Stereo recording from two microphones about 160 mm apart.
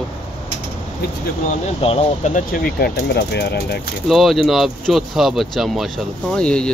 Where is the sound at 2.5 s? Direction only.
70° left (ahead or behind); by 3.8 s 90° left.